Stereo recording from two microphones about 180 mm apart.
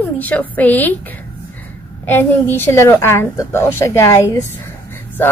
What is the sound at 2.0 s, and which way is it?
A woman's voice, 10° left (ahead or behind).